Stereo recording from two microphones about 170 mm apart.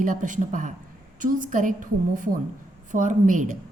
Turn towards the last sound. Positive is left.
turn(degrees=-50)  # may be behind; listen again after turning